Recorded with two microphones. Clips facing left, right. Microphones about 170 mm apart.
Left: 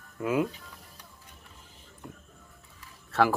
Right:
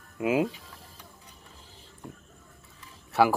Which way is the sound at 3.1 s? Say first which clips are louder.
Right 2 dB; 15° right (ahead or behind).